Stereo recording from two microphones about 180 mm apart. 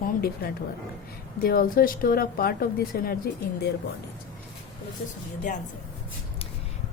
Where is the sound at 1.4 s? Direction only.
55° left (ahead or behind).